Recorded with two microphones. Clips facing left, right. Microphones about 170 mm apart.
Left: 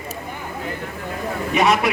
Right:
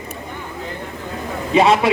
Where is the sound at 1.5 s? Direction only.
25° right (ahead or behind).